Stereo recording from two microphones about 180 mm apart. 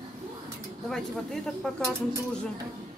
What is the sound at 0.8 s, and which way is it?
Speech, centre (ahead or behind).